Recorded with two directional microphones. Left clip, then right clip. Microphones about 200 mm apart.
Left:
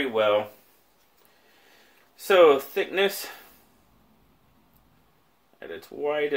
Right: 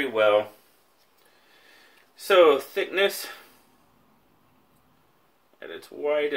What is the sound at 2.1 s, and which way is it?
Speech, 40° left (ahead or behind).